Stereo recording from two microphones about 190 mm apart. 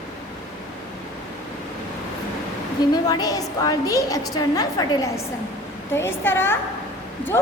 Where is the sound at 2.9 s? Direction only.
20° left (ahead or behind).